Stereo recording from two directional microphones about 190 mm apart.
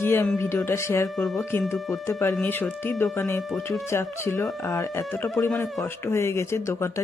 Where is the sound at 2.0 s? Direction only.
15° left (ahead or behind).